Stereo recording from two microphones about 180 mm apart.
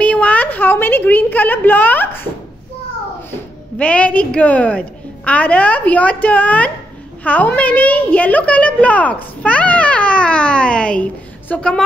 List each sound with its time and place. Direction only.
0.0 s a woman's voice: 10° left (ahead or behind)
3.3 s a woman's voice: 5° left (ahead or behind)